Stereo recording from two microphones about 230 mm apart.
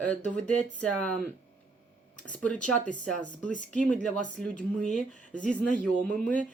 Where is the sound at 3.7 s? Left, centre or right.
Centre.